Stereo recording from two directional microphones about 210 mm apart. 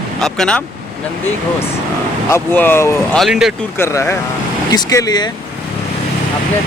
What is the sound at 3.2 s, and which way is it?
Speech, centre (ahead or behind).